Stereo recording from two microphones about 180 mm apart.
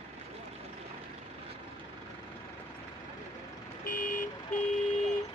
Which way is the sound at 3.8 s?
50° left (ahead or behind).